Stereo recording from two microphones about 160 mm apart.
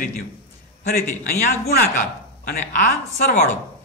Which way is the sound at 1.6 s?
75° left (ahead or behind).